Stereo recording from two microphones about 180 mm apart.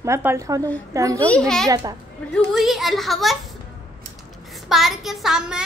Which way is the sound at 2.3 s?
Centre (ahead or behind).